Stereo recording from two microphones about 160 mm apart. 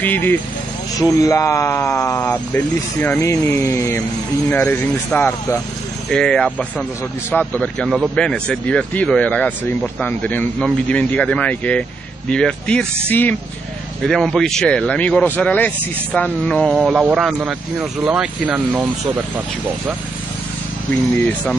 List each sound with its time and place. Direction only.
0.0 s speech: 10° left (ahead or behind); by 18.9 s 5° right (ahead or behind)
20.9 s speech: 10° left (ahead or behind)